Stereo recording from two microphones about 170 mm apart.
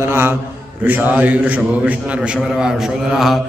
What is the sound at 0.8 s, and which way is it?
A man's voice, 10° right (ahead or behind).